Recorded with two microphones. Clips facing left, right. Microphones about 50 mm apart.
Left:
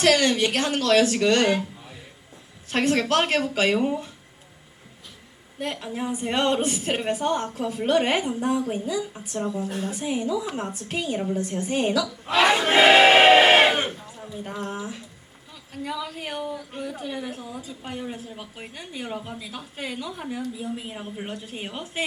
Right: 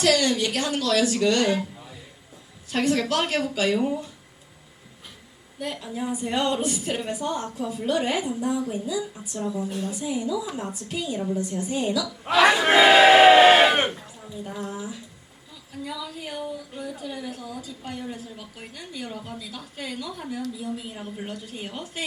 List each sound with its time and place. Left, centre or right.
0.0 s a woman's voice: left
2.6 s a woman's voice: left
5.5 s a woman's voice: left
13.0 s a woman's voice: left
13.7 s speech: right
14.4 s a woman's voice: left
17.3 s a woman's voice: left